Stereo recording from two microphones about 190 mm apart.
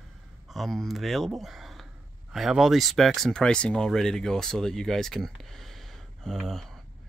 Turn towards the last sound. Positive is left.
turn(degrees=0)  # may be behind; listen again after turning